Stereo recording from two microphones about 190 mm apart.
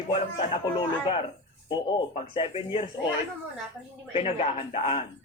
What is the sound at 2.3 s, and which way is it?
Speech, 30° left (ahead or behind).